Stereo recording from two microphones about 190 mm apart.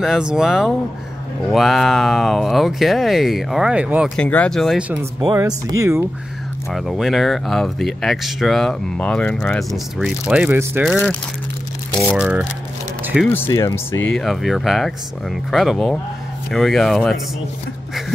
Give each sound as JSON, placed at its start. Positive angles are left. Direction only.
{"t": 0.0, "sound": "speech", "side_deg": -5}
{"t": 4.2, "sound": "speech", "side_deg": 5}
{"t": 5.2, "sound": "speech", "side_deg": -20}
{"t": 6.7, "sound": "speech", "side_deg": 0}
{"t": 10.9, "sound": "speech", "side_deg": 0}
{"t": 13.3, "sound": "speech", "side_deg": 15}
{"t": 14.0, "sound": "speech", "side_deg": 0}